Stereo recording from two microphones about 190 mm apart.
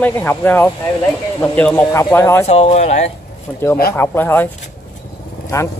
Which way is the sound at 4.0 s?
10° left (ahead or behind).